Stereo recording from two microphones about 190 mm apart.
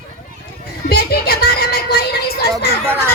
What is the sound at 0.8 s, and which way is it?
Music, 55° left (ahead or behind).